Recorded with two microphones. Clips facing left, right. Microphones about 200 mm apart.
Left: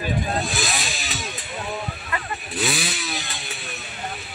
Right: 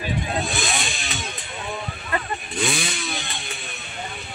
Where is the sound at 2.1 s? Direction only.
35° right (ahead or behind).